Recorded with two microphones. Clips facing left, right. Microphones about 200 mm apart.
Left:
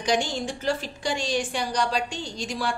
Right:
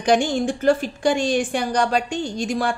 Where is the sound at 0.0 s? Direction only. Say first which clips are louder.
Right 7 dB; 55° right (ahead or behind).